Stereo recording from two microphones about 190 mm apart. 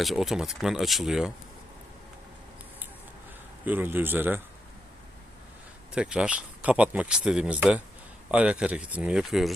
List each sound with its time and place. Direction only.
0.0 s speech: centre (ahead or behind)
3.7 s speech: 10° right (ahead or behind)
5.9 s speech: 5° right (ahead or behind)